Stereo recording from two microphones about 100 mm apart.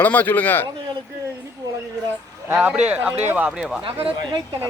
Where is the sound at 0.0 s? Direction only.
15° left (ahead or behind).